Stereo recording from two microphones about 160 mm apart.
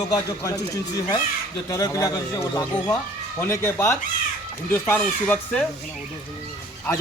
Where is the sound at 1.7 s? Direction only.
20° left (ahead or behind).